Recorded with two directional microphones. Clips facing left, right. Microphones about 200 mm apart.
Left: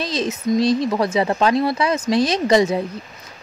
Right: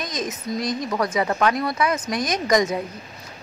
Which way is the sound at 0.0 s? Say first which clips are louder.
Left 6 dB; 30° left (ahead or behind).